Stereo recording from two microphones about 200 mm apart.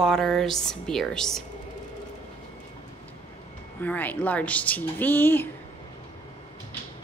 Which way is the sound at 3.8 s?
10° left (ahead or behind).